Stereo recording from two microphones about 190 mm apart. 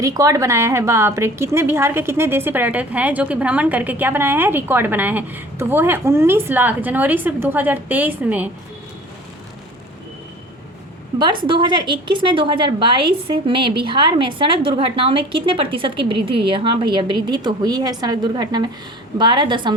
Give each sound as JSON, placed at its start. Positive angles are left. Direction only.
{"t": 0.0, "sound": "a woman's voice", "side_deg": -20}
{"t": 11.2, "sound": "a woman's voice", "side_deg": -25}